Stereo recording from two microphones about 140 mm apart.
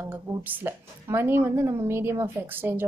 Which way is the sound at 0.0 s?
15° right (ahead or behind).